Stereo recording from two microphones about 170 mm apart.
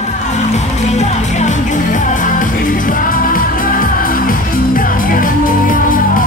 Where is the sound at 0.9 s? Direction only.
40° left (ahead or behind).